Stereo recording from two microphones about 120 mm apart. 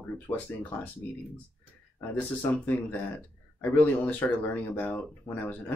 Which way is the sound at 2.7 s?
15° left (ahead or behind).